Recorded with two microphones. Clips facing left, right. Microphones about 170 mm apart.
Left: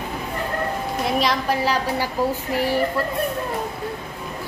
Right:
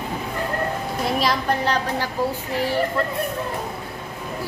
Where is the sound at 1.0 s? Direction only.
Centre (ahead or behind).